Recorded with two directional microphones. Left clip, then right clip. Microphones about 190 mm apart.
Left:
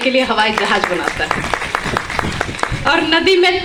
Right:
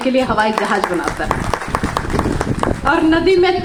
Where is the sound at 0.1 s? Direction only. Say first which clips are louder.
Even; 60° right (ahead or behind).